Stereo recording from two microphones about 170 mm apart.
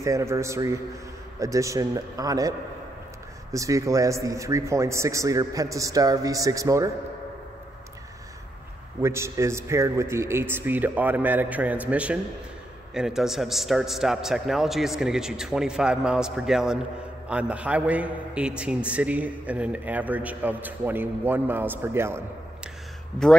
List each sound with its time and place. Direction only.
0.0 s a man's voice: 15° right (ahead or behind)
3.5 s speech: 20° right (ahead or behind)
9.0 s a man's voice: 15° right (ahead or behind)